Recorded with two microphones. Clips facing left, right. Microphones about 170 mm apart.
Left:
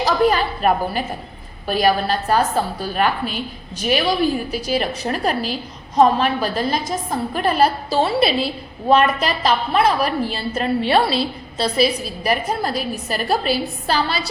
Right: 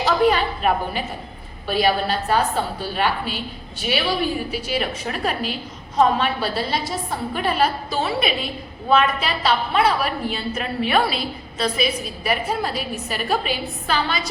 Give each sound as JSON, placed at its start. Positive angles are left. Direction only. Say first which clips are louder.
{"t": 0.0, "sound": "a woman's voice", "louder": "left 1 dB", "side_deg": 40}